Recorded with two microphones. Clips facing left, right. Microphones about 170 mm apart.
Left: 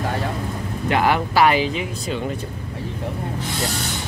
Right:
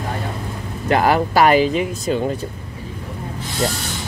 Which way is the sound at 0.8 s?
40° right (ahead or behind).